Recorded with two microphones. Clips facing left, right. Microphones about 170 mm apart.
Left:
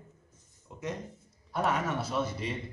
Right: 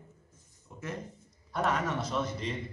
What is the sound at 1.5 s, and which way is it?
A man's voice, 5° left (ahead or behind).